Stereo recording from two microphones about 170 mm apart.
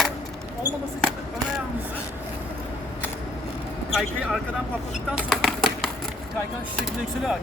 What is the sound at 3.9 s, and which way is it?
Vehicle, centre (ahead or behind).